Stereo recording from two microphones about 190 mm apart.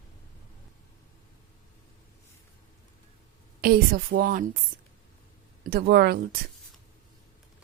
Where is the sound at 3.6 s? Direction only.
50° right (ahead or behind).